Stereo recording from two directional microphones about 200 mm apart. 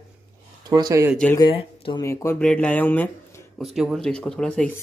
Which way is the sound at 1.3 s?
25° left (ahead or behind).